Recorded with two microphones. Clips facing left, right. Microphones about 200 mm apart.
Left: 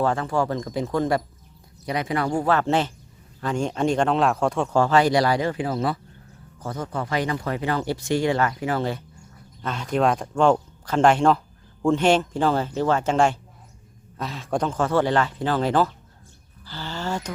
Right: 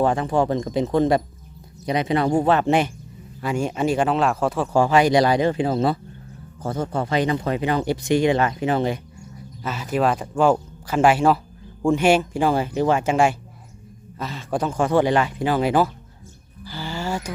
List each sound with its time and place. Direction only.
0.0 s speech: 15° right (ahead or behind)
9.6 s speech: 5° right (ahead or behind)
16.6 s a sound: 10° right (ahead or behind)